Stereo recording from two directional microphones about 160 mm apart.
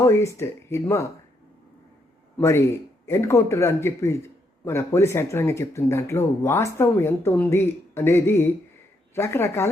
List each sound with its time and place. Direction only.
0.0 s speech: 15° left (ahead or behind)
2.4 s speech: 15° left (ahead or behind)